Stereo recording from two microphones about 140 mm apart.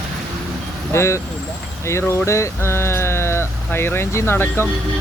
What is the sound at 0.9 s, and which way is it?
Speech, 20° left (ahead or behind).